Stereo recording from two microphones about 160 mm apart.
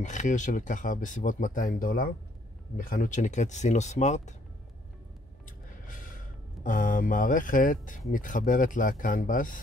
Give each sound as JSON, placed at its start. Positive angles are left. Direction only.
{"t": 0.0, "sound": "speech", "side_deg": 50}
{"t": 5.9, "sound": "speech", "side_deg": 55}